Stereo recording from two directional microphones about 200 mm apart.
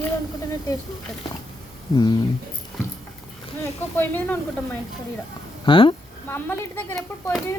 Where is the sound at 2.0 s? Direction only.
20° left (ahead or behind).